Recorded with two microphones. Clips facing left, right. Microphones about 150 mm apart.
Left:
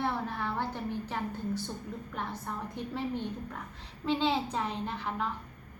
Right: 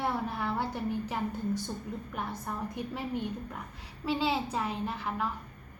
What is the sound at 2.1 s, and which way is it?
A woman's voice, 10° right (ahead or behind).